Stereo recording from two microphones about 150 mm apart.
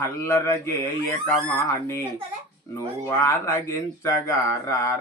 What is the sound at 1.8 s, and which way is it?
A child's voice, 15° left (ahead or behind).